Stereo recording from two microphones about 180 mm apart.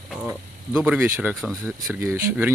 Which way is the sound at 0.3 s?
10° right (ahead or behind).